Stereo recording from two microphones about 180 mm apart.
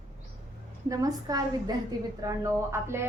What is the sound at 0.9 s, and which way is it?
A woman's voice, 20° right (ahead or behind).